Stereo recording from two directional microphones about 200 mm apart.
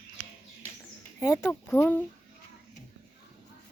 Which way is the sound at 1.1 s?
15° left (ahead or behind).